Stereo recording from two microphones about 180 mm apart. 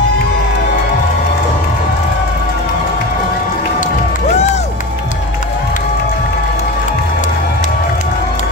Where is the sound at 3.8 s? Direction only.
45° left (ahead or behind).